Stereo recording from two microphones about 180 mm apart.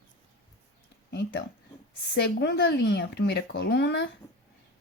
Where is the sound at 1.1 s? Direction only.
70° left (ahead or behind).